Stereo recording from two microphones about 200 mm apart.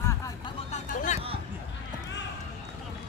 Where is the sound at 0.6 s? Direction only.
35° left (ahead or behind).